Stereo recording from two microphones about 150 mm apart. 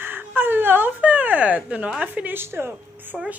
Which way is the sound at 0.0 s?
15° right (ahead or behind).